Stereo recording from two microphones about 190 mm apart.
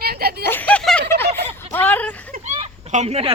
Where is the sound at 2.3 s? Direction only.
40° right (ahead or behind).